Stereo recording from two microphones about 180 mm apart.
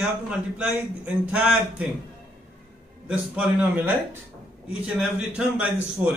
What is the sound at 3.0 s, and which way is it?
A man's voice, 5° right (ahead or behind).